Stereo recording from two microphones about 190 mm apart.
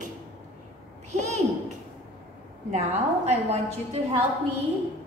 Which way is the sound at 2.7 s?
35° right (ahead or behind).